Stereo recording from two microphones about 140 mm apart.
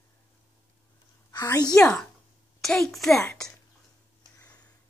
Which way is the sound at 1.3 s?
25° left (ahead or behind).